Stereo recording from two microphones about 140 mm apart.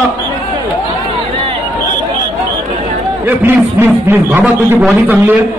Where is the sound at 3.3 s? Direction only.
15° right (ahead or behind).